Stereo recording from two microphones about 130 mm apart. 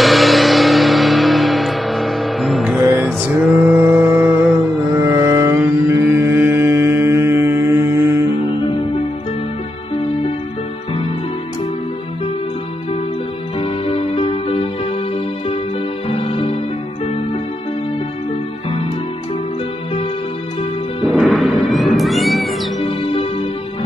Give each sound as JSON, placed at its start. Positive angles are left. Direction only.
{"t": 0.0, "sound": "music", "side_deg": 0}
{"t": 3.4, "sound": "mantra", "side_deg": 0}
{"t": 8.4, "sound": "music", "side_deg": 40}
{"t": 13.6, "sound": "music", "side_deg": 45}
{"t": 16.1, "sound": "music", "side_deg": 45}
{"t": 21.0, "sound": "cat", "side_deg": 0}
{"t": 22.8, "sound": "music", "side_deg": 45}